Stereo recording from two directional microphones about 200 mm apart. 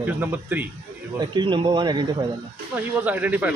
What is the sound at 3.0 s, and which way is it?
Speech, 10° right (ahead or behind).